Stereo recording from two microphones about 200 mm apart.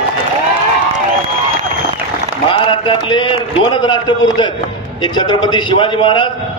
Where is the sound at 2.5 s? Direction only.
25° left (ahead or behind).